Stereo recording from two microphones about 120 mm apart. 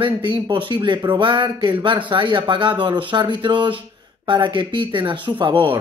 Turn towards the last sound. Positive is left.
turn(degrees=-40)  # may be behind; listen again after turning